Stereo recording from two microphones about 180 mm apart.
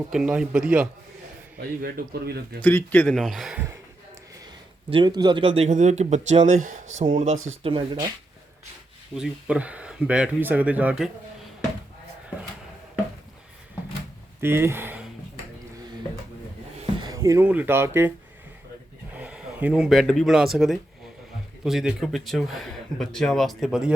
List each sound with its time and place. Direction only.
0.1 s speech: 5° right (ahead or behind)
1.5 s a man's voice: 60° right (ahead or behind)
2.6 s speech: 10° left (ahead or behind)
4.9 s speech: 25° right (ahead or behind); by 7.3 s 45° right (ahead or behind)
7.6 s speech: 30° right (ahead or behind)
9.1 s speech: 5° right (ahead or behind)
14.4 s speech: 15° right (ahead or behind)
17.0 s speech: 20° right (ahead or behind)
19.1 s speech: 5° right (ahead or behind)